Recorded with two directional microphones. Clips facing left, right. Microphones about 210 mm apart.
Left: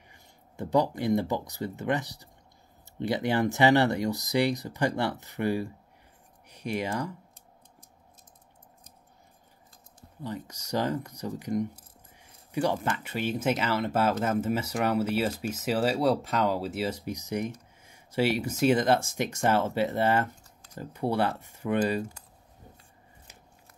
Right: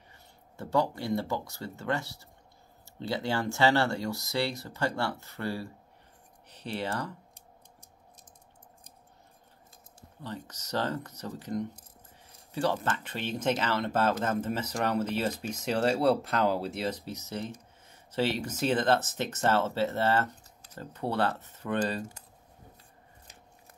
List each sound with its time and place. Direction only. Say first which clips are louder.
0.1 s speech: left 2 dB; 15° left (ahead or behind)
10.2 s speech: left 4 dB; 10° left (ahead or behind)